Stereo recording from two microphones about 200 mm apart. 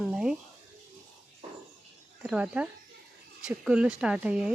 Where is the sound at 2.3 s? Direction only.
5° right (ahead or behind).